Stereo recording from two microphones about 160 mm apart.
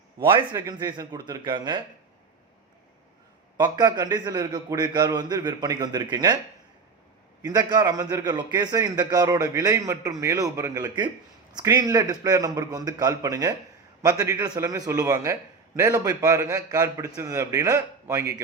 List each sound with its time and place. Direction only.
0.2 s a man's voice: 30° right (ahead or behind)
3.6 s a man's voice: 25° right (ahead or behind)
7.4 s a man's voice: 25° right (ahead or behind)